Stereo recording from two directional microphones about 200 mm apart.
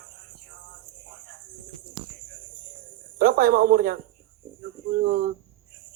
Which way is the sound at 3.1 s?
45° right (ahead or behind).